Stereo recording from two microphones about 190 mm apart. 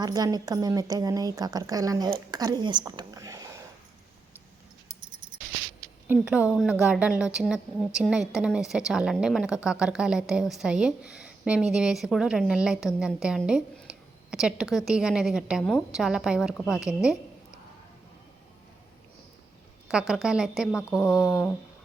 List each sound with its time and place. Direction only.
0.0 s a woman's voice: 20° right (ahead or behind)
2.3 s a sound: 20° right (ahead or behind)
6.1 s a woman's voice: 5° right (ahead or behind)
19.9 s a woman's voice: 5° right (ahead or behind)